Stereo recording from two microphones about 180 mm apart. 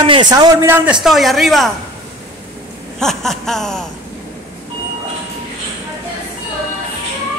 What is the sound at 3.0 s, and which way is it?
Speech, centre (ahead or behind).